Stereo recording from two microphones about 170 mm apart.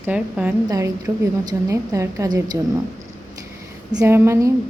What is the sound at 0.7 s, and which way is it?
A woman's voice, 20° right (ahead or behind).